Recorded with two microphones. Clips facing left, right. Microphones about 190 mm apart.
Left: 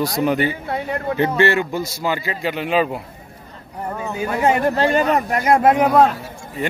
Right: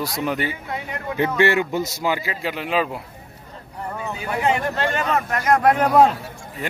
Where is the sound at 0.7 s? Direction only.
35° left (ahead or behind).